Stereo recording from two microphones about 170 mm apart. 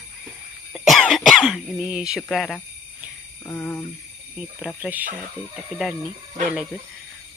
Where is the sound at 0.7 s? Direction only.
Centre (ahead or behind).